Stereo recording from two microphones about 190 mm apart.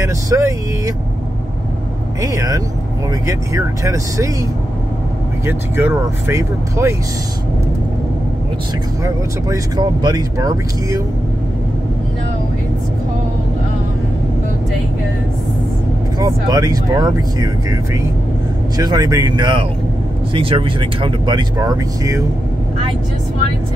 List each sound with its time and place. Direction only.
0.0 s speech: 15° right (ahead or behind)
2.2 s speech: 20° right (ahead or behind)
5.5 s speech: 10° right (ahead or behind)
9.0 s speech: 20° right (ahead or behind)
16.2 s speech: 20° right (ahead or behind)
18.8 s speech: 20° right (ahead or behind)